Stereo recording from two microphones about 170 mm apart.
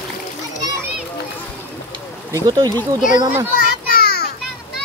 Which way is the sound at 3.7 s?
60° left (ahead or behind).